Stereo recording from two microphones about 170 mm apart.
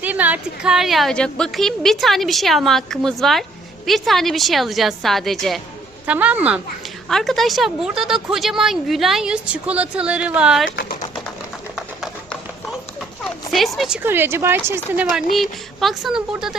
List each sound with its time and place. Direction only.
0.0 s a woman's voice: 10° right (ahead or behind)
10.7 s speech: 90° left
13.5 s a woman's voice: centre (ahead or behind)